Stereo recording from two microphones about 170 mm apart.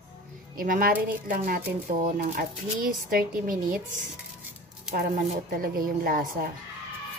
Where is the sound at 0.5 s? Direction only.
55° right (ahead or behind).